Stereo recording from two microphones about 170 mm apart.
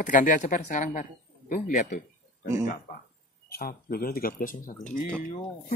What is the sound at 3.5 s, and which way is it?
Speech, 60° left (ahead or behind).